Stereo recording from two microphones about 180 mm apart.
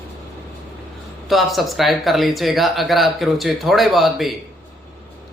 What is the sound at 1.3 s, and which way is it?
Speech, centre (ahead or behind).